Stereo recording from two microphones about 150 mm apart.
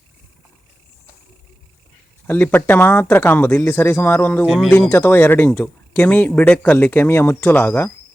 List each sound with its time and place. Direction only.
2.2 s speech: 15° left (ahead or behind)